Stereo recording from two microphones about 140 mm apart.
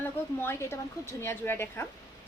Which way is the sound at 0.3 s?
15° left (ahead or behind).